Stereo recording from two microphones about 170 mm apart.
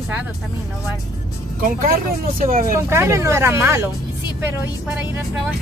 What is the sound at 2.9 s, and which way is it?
Speech, 15° right (ahead or behind).